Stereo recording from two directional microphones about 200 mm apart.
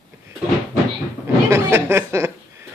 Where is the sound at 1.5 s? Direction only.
10° right (ahead or behind).